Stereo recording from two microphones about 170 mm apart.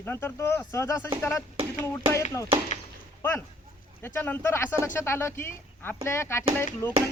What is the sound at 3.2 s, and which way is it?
A man's voice, 15° left (ahead or behind).